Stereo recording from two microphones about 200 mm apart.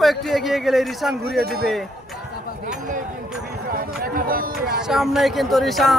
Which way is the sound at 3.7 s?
45° right (ahead or behind).